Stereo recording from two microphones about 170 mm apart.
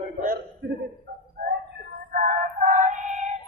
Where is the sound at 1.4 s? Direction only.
65° right (ahead or behind).